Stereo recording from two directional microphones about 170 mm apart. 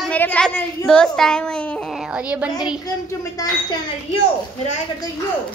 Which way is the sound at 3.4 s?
20° left (ahead or behind).